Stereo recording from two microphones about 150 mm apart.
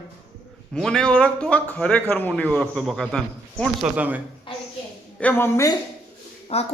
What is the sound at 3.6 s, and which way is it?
Speech, 10° right (ahead or behind).